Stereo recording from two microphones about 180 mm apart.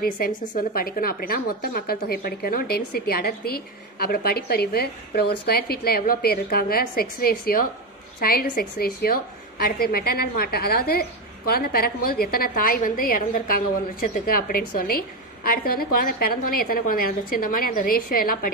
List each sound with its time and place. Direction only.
0.0 s a woman's voice: 55° left (ahead or behind)